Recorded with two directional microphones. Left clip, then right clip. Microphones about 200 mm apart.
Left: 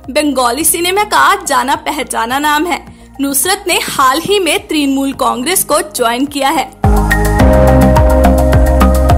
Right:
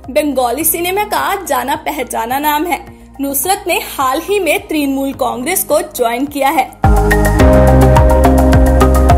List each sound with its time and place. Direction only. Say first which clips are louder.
0.1 s a woman's voice: left 1 dB; 20° left (ahead or behind)
6.8 s music: right 1 dB; centre (ahead or behind)